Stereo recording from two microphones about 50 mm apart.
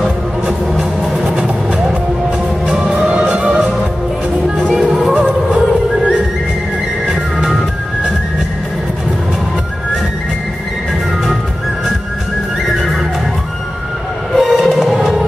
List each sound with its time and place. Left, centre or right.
1.2 s vehicle: centre
3.1 s music: right
4.6 s music: centre
14.3 s music: centre